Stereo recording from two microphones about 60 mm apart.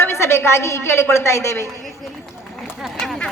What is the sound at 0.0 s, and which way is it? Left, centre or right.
A woman's voice, left.